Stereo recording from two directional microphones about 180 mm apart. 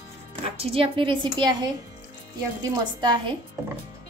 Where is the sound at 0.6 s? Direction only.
30° right (ahead or behind).